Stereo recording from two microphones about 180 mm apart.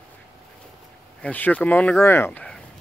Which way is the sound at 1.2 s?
10° left (ahead or behind).